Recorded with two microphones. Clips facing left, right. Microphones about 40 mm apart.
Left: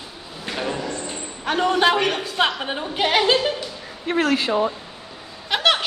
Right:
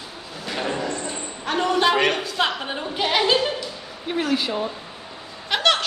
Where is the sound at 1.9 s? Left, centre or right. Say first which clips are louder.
Right 1 dB; centre.